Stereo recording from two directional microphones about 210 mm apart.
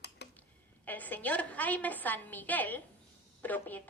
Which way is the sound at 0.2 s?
55° left (ahead or behind).